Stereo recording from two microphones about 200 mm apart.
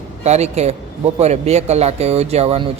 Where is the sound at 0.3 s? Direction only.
35° right (ahead or behind).